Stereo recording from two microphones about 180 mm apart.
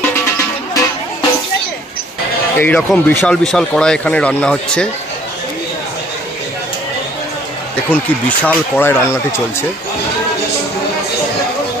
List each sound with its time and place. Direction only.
0.1 s music: 15° left (ahead or behind)
2.6 s speech: 10° left (ahead or behind)
7.9 s speech: 10° left (ahead or behind)